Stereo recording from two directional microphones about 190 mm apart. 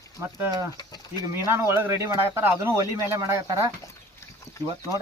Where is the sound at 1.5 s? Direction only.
15° right (ahead or behind).